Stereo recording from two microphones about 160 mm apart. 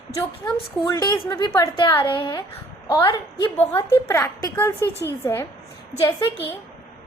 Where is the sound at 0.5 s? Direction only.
25° left (ahead or behind).